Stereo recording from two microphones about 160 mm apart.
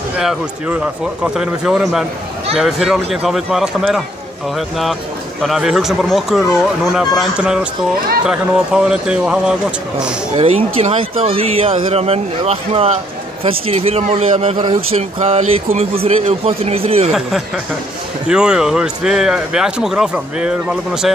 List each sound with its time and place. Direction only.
0.2 s speech: 5° right (ahead or behind)
10.3 s speech: 40° right (ahead or behind)
18.3 s speech: 5° right (ahead or behind)